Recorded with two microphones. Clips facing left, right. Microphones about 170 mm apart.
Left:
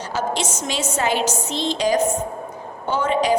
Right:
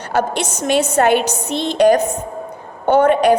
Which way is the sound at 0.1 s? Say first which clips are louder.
Right 6 dB; 60° right (ahead or behind).